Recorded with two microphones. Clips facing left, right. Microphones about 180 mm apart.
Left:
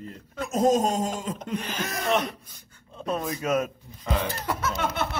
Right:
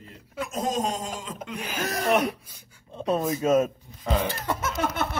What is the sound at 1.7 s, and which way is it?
Speech, 40° right (ahead or behind).